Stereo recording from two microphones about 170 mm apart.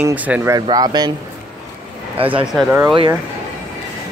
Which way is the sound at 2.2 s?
35° right (ahead or behind).